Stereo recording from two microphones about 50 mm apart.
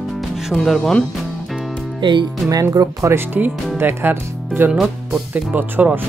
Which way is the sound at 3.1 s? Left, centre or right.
Right.